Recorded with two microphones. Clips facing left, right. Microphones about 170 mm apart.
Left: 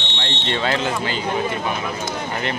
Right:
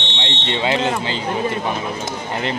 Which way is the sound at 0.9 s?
25° right (ahead or behind).